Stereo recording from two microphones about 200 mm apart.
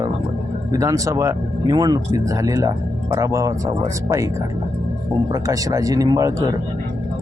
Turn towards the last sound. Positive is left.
turn(degrees=-15)  # may be behind; listen again after turning